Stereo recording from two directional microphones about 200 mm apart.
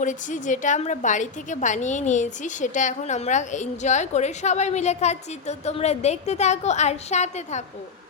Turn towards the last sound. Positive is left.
turn(degrees=35)  # may be behind; listen again after turning